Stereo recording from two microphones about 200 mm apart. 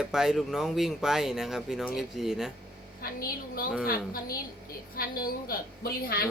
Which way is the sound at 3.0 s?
50° left (ahead or behind).